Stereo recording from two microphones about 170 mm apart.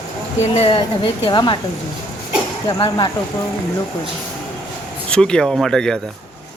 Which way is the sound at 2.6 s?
25° left (ahead or behind).